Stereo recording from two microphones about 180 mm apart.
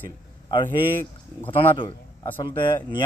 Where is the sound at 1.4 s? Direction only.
25° left (ahead or behind).